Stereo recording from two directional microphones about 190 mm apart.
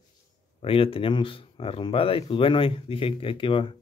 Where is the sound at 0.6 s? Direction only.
30° left (ahead or behind).